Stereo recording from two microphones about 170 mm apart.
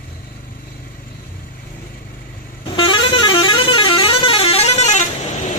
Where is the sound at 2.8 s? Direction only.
30° left (ahead or behind).